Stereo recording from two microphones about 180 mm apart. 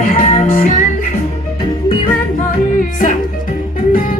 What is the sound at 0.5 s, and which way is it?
Music, 45° left (ahead or behind).